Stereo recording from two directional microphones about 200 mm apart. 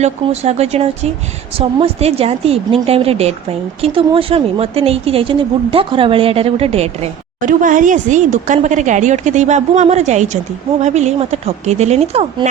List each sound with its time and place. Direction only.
0.0 s a woman's voice: 35° right (ahead or behind)